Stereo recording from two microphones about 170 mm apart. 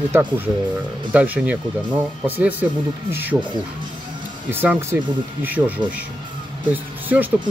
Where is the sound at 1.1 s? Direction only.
10° right (ahead or behind).